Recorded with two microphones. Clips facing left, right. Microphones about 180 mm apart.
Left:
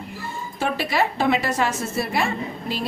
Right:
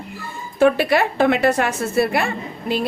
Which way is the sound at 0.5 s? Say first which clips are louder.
Right 8 dB; 55° right (ahead or behind).